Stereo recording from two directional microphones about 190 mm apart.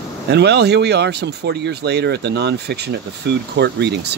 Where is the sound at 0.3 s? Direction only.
60° right (ahead or behind).